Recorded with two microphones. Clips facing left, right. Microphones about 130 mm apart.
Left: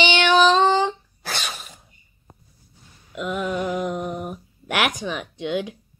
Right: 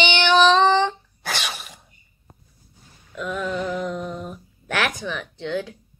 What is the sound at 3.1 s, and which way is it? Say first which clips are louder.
Music: left 1 dB; 15° left (ahead or behind).